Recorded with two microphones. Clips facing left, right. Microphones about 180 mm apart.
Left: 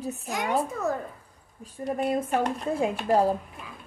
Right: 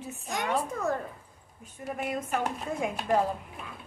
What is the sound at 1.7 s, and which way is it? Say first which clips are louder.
A woman's voice: left 6 dB; 35° left (ahead or behind).